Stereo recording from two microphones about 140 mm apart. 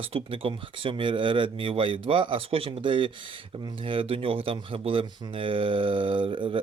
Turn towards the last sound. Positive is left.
turn(degrees=-35)  # may be behind; listen again after turning